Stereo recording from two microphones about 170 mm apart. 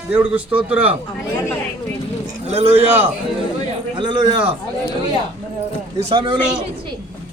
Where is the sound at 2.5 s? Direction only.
40° right (ahead or behind).